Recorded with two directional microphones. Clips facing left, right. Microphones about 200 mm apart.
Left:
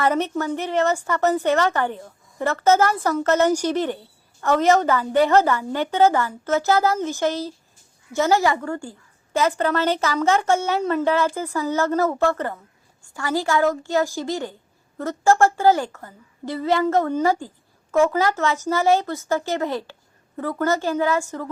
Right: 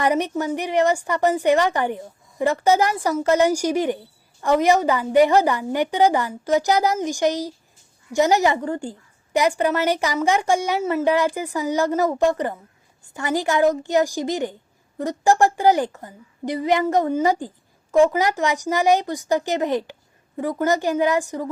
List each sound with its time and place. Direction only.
0.0 s a woman's voice: 15° right (ahead or behind)